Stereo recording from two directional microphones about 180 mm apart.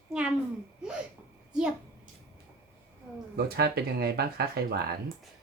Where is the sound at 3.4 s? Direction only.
60° right (ahead or behind).